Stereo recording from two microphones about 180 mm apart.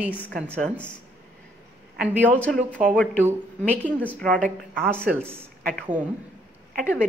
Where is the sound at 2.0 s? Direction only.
10° right (ahead or behind).